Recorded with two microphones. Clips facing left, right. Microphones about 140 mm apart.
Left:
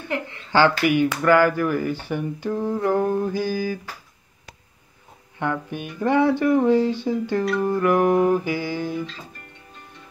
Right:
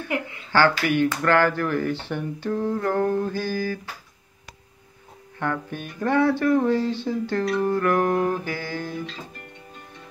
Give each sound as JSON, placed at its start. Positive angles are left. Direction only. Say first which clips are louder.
{"t": 0.5, "sound": "speech", "louder": "left 2 dB", "side_deg": 15}
{"t": 5.4, "sound": "speech", "louder": "left 2 dB", "side_deg": 15}